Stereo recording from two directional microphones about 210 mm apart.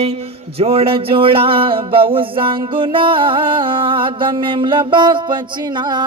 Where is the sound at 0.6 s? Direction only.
25° right (ahead or behind).